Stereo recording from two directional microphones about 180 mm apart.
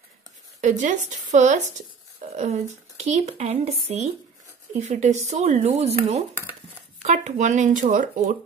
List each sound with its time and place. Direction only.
0.6 s speech: 45° right (ahead or behind)